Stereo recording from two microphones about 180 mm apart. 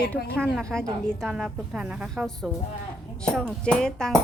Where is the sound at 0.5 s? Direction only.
5° left (ahead or behind).